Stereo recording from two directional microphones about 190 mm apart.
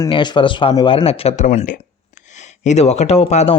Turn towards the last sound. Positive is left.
turn(degrees=35)  # may be behind; listen again after turning